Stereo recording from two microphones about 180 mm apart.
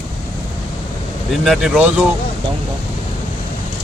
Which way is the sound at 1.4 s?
Centre (ahead or behind).